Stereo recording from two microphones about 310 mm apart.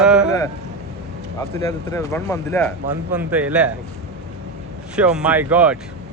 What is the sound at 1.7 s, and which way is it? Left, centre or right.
Speech, centre.